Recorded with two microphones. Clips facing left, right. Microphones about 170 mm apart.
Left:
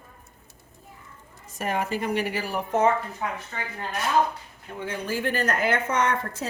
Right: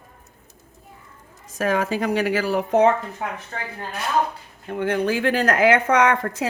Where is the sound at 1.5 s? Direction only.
90° right.